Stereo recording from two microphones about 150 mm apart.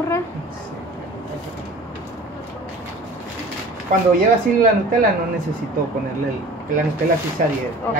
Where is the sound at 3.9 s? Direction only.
60° right (ahead or behind).